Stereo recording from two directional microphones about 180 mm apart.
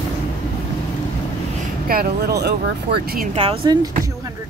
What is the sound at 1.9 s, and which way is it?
Speech, 60° right (ahead or behind).